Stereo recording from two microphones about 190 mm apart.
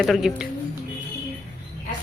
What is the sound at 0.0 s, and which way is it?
Speech, centre (ahead or behind).